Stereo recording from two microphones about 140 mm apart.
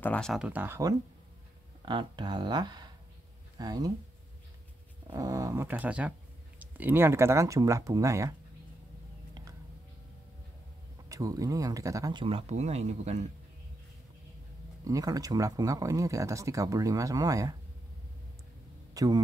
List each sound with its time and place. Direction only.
0.0 s speech: 10° left (ahead or behind)
0.3 s speech: 10° right (ahead or behind)
1.9 s speech: 35° right (ahead or behind)
5.1 s speech: 25° right (ahead or behind)
11.1 s speech: 25° right (ahead or behind)
12.2 s speech: 40° right (ahead or behind)
14.9 s speech: 25° right (ahead or behind)
18.9 s speech: 25° right (ahead or behind)